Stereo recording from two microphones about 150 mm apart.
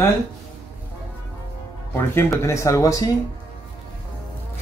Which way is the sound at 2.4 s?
20° left (ahead or behind).